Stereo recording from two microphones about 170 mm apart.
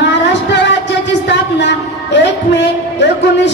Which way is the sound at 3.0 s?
90° left.